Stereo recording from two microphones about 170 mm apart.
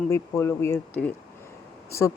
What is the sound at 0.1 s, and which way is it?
Speech, 15° left (ahead or behind).